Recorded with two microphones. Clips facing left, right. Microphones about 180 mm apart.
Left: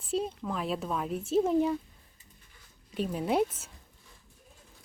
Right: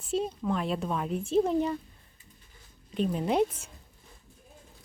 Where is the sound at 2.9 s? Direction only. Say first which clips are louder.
Right 2 dB; 10° left (ahead or behind).